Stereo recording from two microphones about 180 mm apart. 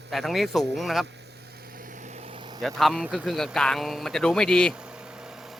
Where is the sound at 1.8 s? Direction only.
45° right (ahead or behind); by 2.6 s 25° right (ahead or behind).